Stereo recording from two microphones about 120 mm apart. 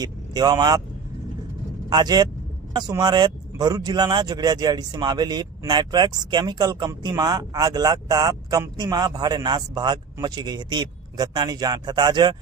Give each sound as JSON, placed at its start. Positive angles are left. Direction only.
{"t": 0.0, "sound": "speech", "side_deg": -35}
{"t": 1.9, "sound": "speech", "side_deg": -35}